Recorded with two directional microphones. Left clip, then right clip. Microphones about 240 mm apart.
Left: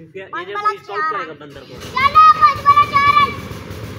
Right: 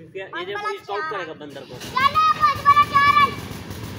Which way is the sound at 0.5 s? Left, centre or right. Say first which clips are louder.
Left 9 dB; centre.